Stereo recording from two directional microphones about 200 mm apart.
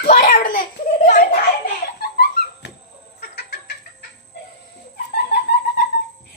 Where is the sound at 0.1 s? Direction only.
40° left (ahead or behind).